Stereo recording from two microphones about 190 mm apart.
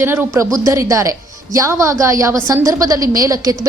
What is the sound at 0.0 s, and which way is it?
A woman's voice, 10° right (ahead or behind).